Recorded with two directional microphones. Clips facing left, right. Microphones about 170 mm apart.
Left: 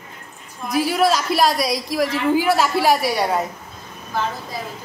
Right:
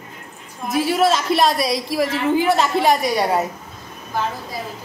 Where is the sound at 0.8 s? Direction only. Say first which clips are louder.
Right 1 dB; centre (ahead or behind).